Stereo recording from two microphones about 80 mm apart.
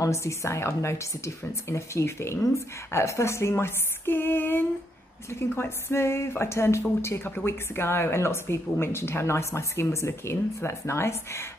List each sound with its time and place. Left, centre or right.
0.0 s speech: left